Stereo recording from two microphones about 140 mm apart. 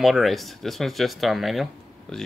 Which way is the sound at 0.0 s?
Centre (ahead or behind).